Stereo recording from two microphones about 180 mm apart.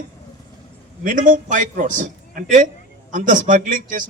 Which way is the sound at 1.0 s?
45° right (ahead or behind).